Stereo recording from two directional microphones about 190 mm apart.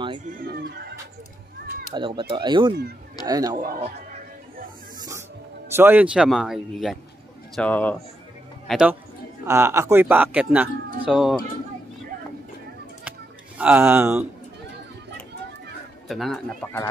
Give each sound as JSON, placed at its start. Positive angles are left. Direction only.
{"t": 0.2, "sound": "speech", "side_deg": -45}
{"t": 0.6, "sound": "speech", "side_deg": -65}
{"t": 2.0, "sound": "speech", "side_deg": -25}
{"t": 3.5, "sound": "speech", "side_deg": -45}
{"t": 5.8, "sound": "speech", "side_deg": -10}
{"t": 8.6, "sound": "a man's voice", "side_deg": -5}
{"t": 9.4, "sound": "speech", "side_deg": -15}
{"t": 13.6, "sound": "speech", "side_deg": -10}
{"t": 16.1, "sound": "speech", "side_deg": 0}
{"t": 16.6, "sound": "speech", "side_deg": 10}